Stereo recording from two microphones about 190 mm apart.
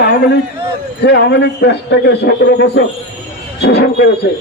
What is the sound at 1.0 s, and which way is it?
A man's voice, 65° left (ahead or behind).